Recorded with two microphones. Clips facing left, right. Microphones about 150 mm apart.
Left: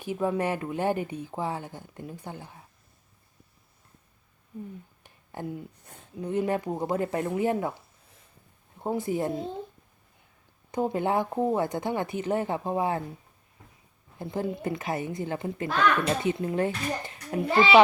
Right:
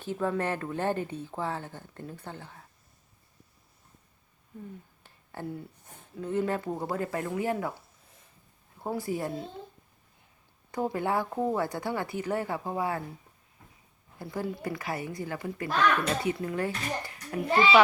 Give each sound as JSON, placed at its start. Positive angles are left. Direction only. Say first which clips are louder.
{"t": 0.0, "sound": "speech", "louder": "left 2 dB", "side_deg": 15}
{"t": 5.0, "sound": "a sound", "louder": "left 2 dB", "side_deg": 15}
{"t": 6.1, "sound": "speech", "louder": "left 2 dB", "side_deg": 15}
{"t": 8.8, "sound": "speech", "louder": "left 4 dB", "side_deg": 20}
{"t": 10.7, "sound": "speech", "louder": "left 3 dB", "side_deg": 20}
{"t": 14.2, "sound": "speech", "louder": "left 3 dB", "side_deg": 20}